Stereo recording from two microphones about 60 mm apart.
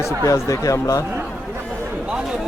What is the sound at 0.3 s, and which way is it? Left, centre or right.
Speech, left.